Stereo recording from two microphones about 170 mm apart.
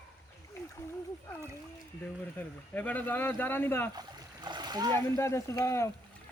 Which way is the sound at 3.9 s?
25° right (ahead or behind).